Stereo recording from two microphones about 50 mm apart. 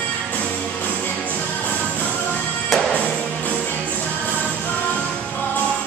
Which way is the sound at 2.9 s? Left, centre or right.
Left.